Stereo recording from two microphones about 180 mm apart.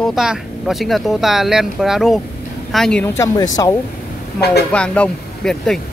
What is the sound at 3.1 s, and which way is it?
Speech, 15° left (ahead or behind).